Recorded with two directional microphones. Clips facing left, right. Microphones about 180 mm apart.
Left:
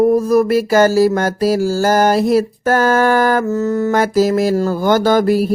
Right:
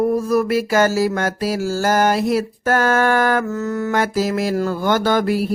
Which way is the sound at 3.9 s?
40° left (ahead or behind).